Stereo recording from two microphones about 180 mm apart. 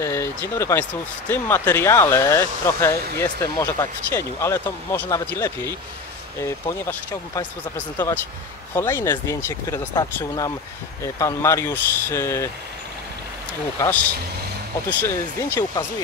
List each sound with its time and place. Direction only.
0.0 s speech: 15° left (ahead or behind)
13.7 s speech: 10° left (ahead or behind)